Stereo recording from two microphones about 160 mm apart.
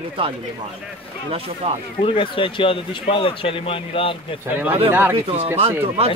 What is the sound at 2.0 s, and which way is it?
Speech, 35° left (ahead or behind).